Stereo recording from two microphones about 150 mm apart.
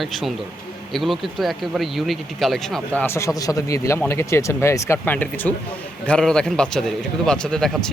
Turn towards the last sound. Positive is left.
turn(degrees=5)  # may be behind; listen again after turning